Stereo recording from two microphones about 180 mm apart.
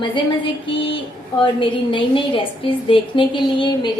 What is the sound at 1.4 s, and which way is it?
A woman's voice, 25° left (ahead or behind).